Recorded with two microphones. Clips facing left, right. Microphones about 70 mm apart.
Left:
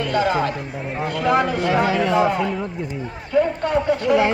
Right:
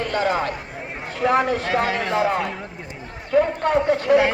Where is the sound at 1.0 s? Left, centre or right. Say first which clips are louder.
Even; left.